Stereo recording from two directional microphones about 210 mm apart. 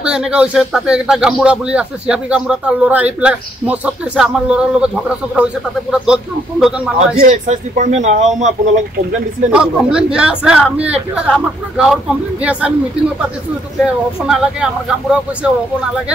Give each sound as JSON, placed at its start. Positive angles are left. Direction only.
{"t": 0.0, "sound": "speech", "side_deg": -5}
{"t": 7.2, "sound": "speech", "side_deg": -35}
{"t": 9.5, "sound": "speech", "side_deg": -5}
{"t": 14.2, "sound": "speech", "side_deg": -5}